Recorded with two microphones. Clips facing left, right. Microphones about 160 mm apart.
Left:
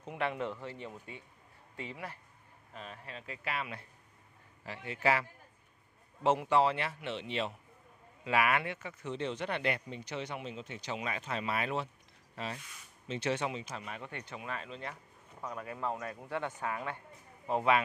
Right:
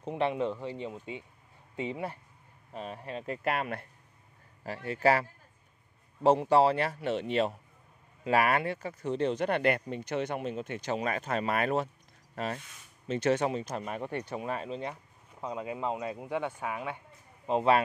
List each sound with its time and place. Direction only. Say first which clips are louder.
0.0 s speech: right 6 dB; 25° right (ahead or behind)
2.7 s speech: right 8 dB; 40° right (ahead or behind)
4.8 s speech: right 5 dB; 40° right (ahead or behind)
6.2 s speech: right 5 dB; 35° right (ahead or behind)
13.1 s speech: right 7 dB; 45° right (ahead or behind)
15.4 s speech: right 4 dB; 20° right (ahead or behind)